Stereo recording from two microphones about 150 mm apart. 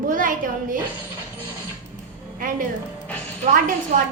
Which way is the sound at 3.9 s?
50° right (ahead or behind).